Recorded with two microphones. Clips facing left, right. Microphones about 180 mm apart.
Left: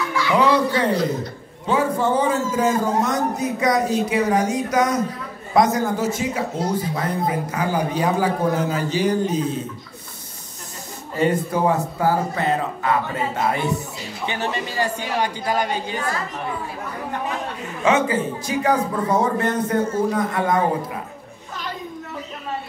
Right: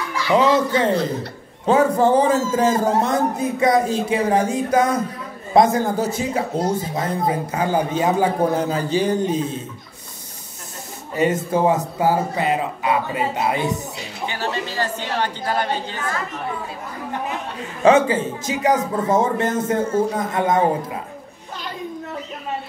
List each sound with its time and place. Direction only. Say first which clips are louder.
0.3 s speech: right 2 dB; 20° right (ahead or behind)
1.7 s speech: right 4 dB; 35° right (ahead or behind)
11.1 s a man's voice: right 1 dB; 20° right (ahead or behind)
14.2 s a woman's voice: even; 20° left (ahead or behind)
17.8 s speech: right 4 dB; 30° right (ahead or behind)